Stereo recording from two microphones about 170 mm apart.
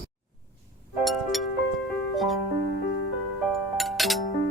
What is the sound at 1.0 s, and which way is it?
Music, centre (ahead or behind).